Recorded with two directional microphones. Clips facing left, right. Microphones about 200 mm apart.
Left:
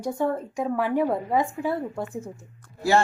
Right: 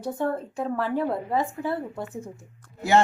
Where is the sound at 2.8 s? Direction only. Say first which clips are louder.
Right 1 dB; 20° right (ahead or behind).